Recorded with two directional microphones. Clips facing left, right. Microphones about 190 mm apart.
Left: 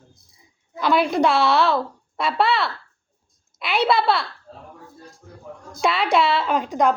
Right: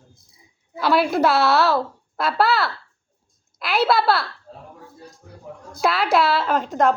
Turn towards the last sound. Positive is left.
turn(degrees=0)  # may be behind; listen again after turning